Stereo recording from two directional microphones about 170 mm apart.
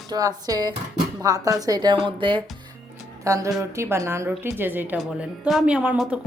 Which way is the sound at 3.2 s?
20° right (ahead or behind).